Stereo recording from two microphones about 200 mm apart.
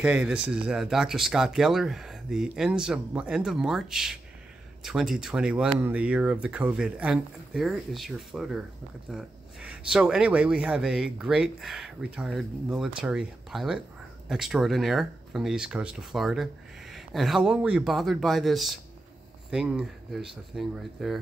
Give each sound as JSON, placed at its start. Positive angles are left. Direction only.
{"t": 0.0, "sound": "speech", "side_deg": -5}